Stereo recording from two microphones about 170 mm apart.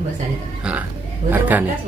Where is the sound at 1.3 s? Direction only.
10° right (ahead or behind).